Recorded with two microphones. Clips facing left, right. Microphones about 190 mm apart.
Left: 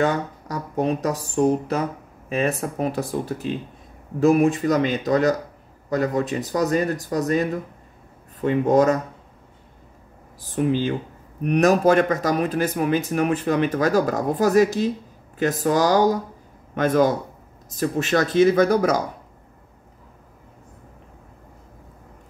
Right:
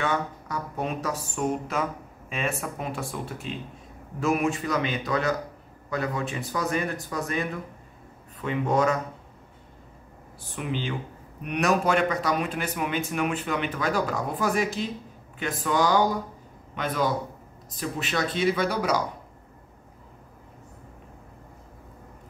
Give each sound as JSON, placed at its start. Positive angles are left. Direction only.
{"t": 0.0, "sound": "speech", "side_deg": 40}
{"t": 10.5, "sound": "speech", "side_deg": 40}